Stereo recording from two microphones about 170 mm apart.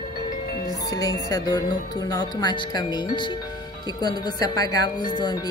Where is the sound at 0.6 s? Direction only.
20° left (ahead or behind).